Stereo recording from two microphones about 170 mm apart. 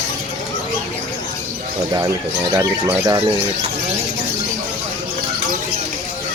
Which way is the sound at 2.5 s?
20° right (ahead or behind).